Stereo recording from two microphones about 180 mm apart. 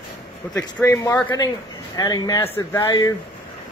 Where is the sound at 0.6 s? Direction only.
10° left (ahead or behind).